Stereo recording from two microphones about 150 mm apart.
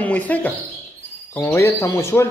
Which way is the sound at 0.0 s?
10° left (ahead or behind).